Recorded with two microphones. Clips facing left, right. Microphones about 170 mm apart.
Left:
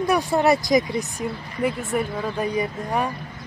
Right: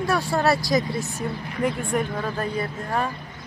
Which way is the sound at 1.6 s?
5° left (ahead or behind).